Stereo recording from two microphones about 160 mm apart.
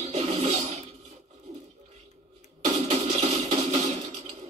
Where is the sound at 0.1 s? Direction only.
40° right (ahead or behind).